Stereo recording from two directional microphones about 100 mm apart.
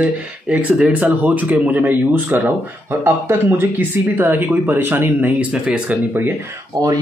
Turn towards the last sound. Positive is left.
turn(degrees=-40)  # may be behind; listen again after turning